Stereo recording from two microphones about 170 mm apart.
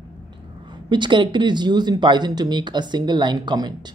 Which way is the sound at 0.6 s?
25° right (ahead or behind).